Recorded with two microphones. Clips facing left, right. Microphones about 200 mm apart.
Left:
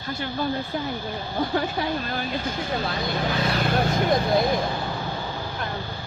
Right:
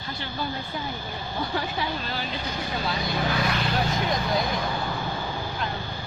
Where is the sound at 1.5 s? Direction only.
50° left (ahead or behind).